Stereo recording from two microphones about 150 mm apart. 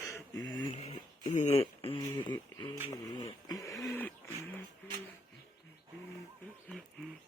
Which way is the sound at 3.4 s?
25° left (ahead or behind).